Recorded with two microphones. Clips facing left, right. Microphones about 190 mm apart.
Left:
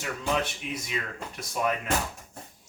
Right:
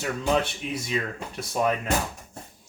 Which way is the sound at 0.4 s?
30° right (ahead or behind).